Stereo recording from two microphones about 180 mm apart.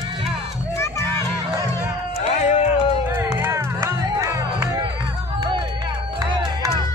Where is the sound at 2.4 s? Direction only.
40° left (ahead or behind).